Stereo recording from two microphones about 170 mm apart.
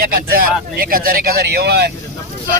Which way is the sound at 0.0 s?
60° right (ahead or behind).